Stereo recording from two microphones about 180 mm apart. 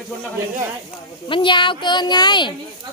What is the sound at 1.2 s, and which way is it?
A child's voice, 25° left (ahead or behind).